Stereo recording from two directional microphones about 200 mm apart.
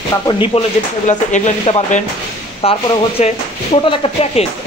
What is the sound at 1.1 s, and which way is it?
Speech, 35° left (ahead or behind).